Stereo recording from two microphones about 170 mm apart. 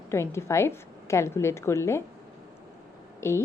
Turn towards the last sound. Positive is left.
turn(degrees=15)  # may be behind; listen again after turning